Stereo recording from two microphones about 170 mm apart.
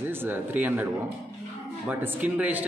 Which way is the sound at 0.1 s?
10° right (ahead or behind).